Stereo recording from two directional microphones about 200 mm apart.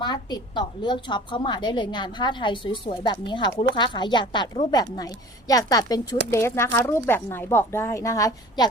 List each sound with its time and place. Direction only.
0.0 s a woman's voice: 20° left (ahead or behind)